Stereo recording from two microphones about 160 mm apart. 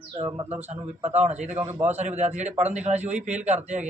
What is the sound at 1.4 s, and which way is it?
Speech, 10° right (ahead or behind).